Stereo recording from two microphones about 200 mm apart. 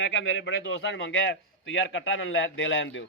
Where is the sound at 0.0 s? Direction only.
70° left (ahead or behind).